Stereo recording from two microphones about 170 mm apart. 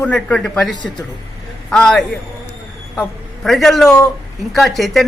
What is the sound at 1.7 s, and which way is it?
A man's voice, 5° left (ahead or behind).